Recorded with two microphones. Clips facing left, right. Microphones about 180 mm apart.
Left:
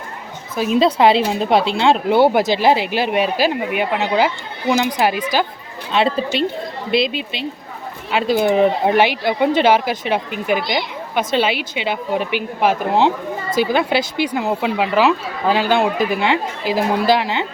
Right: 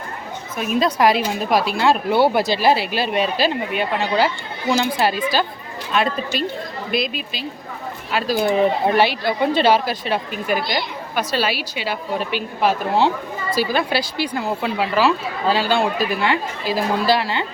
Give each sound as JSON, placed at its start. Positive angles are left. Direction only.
{"t": 0.5, "sound": "a woman's voice", "side_deg": 25}
{"t": 5.9, "sound": "a woman's voice", "side_deg": 25}